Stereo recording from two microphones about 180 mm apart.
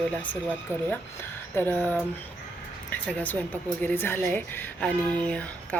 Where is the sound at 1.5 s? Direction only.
10° left (ahead or behind).